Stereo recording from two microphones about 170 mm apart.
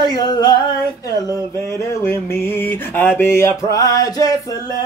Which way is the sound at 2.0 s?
15° left (ahead or behind).